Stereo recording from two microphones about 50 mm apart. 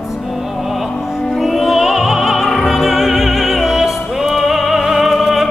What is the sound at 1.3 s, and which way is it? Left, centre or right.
Opera, centre.